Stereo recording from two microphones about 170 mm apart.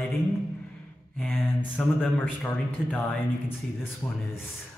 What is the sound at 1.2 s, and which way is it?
A man's voice, 5° left (ahead or behind).